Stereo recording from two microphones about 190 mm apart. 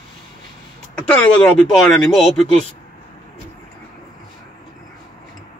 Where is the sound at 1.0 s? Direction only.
5° left (ahead or behind).